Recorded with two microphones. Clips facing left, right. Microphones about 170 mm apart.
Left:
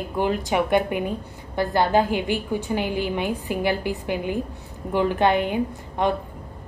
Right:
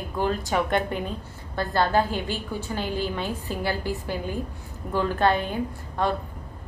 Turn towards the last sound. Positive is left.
turn(degrees=15)  # may be behind; listen again after turning